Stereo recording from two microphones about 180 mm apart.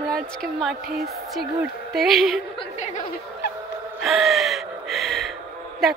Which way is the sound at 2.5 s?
30° left (ahead or behind).